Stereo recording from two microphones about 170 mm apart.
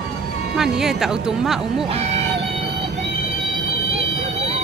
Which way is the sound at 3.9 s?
35° right (ahead or behind).